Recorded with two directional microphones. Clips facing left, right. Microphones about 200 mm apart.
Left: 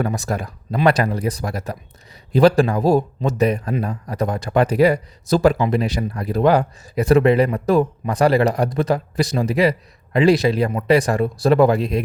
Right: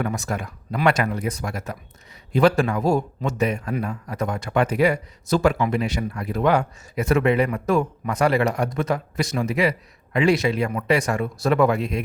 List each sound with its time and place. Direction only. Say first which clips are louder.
0.0 s a man's voice: left 3 dB; 35° left (ahead or behind)